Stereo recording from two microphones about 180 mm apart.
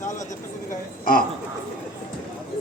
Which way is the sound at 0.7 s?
50° left (ahead or behind).